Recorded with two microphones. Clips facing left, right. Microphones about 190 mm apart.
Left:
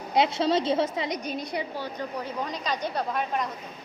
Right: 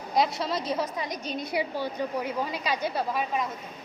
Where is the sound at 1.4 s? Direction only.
10° right (ahead or behind).